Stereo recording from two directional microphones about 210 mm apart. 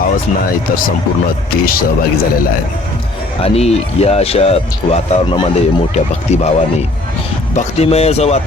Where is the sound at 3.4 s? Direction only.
30° left (ahead or behind).